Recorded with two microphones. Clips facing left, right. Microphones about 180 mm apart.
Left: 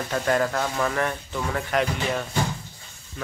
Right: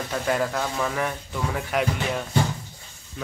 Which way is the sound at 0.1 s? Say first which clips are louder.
Left 2 dB; 5° right (ahead or behind).